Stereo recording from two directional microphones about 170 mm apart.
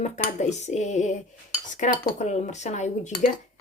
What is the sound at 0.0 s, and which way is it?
Dishes, 40° left (ahead or behind).